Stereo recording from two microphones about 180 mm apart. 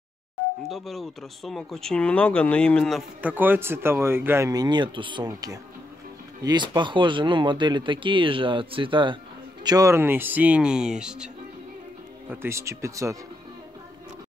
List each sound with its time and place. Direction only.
0.7 s speech: centre (ahead or behind)
3.2 s speech: 10° right (ahead or behind)
12.3 s speech: 15° right (ahead or behind)